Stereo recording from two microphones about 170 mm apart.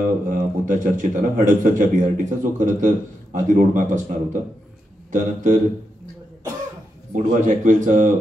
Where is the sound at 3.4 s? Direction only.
50° right (ahead or behind).